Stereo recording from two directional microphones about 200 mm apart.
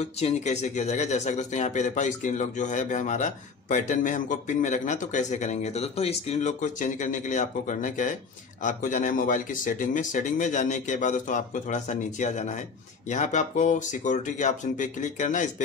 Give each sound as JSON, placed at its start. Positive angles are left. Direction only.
{"t": 0.2, "sound": "speech", "side_deg": 35}